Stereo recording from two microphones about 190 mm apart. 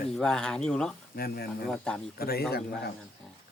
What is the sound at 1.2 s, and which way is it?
Speech, 55° left (ahead or behind).